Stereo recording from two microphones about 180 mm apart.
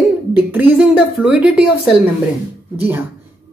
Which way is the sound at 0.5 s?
10° right (ahead or behind).